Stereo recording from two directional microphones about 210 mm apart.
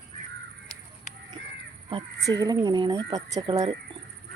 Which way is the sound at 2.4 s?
20° right (ahead or behind).